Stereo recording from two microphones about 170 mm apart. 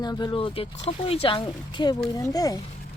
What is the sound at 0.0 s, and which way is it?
Speech, 25° left (ahead or behind).